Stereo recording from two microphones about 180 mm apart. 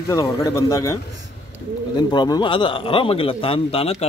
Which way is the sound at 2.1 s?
25° left (ahead or behind).